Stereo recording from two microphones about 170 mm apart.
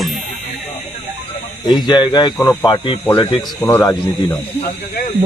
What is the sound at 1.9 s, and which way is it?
Speech, 25° left (ahead or behind).